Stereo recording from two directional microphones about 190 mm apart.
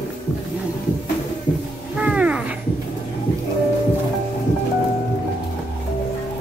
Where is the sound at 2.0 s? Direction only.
5° right (ahead or behind).